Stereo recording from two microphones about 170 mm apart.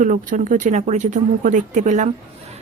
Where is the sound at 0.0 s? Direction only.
50° right (ahead or behind).